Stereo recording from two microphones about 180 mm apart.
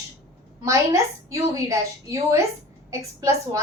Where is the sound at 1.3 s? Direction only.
15° right (ahead or behind).